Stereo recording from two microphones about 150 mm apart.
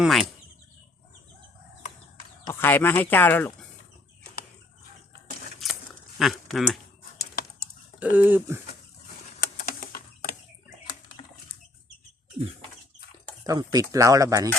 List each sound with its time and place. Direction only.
0.0 s speech: centre (ahead or behind)
2.5 s speech: 15° left (ahead or behind)
5.6 s a sound: centre (ahead or behind)
6.1 s speech: centre (ahead or behind)
7.9 s speech: 10° right (ahead or behind)
9.4 s a sound: 80° left
13.4 s speech: 25° right (ahead or behind)